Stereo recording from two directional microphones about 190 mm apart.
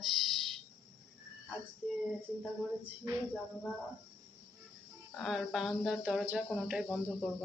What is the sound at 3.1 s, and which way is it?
Speech, 20° right (ahead or behind).